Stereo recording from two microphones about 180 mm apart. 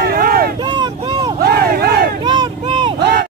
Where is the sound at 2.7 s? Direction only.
25° right (ahead or behind).